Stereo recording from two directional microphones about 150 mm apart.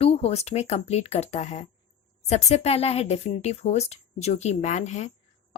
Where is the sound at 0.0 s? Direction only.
40° left (ahead or behind).